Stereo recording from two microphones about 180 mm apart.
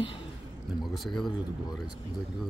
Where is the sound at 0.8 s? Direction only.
Centre (ahead or behind).